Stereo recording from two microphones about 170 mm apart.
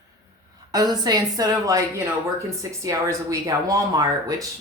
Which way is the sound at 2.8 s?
20° right (ahead or behind).